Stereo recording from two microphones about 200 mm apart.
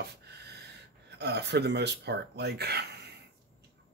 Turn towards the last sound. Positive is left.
turn(degrees=-55)  # may be behind; listen again after turning